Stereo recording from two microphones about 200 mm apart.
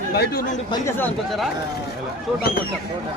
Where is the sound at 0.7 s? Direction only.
10° left (ahead or behind).